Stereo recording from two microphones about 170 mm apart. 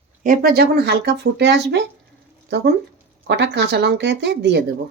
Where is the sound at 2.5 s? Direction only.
80° right.